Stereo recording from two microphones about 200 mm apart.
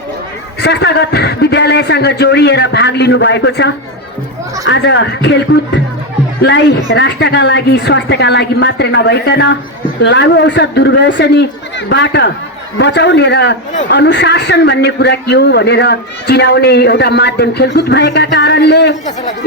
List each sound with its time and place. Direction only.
0.6 s a man's voice: 60° left (ahead or behind)